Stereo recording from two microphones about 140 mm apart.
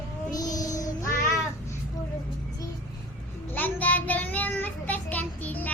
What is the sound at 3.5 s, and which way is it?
Child singing, 10° left (ahead or behind).